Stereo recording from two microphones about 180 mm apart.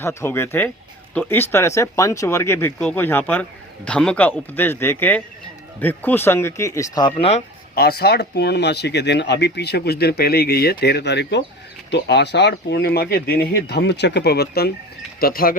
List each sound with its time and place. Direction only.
0.0 s speech: 15° left (ahead or behind)
7.8 s speech: 60° left (ahead or behind)